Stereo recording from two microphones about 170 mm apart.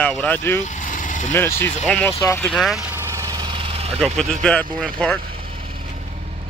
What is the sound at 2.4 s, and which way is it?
Speech, centre (ahead or behind).